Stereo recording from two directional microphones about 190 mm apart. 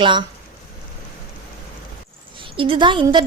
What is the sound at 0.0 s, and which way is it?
Speech, 25° right (ahead or behind).